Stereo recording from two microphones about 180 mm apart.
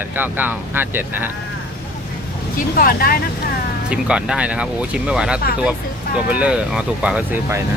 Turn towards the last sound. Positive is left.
turn(degrees=-10)  # may be behind; listen again after turning